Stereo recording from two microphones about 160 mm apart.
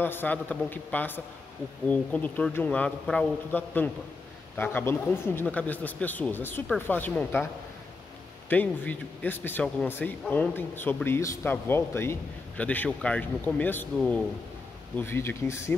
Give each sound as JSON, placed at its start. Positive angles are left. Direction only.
{"t": 0.0, "sound": "speech", "side_deg": 10}
{"t": 8.5, "sound": "speech", "side_deg": 10}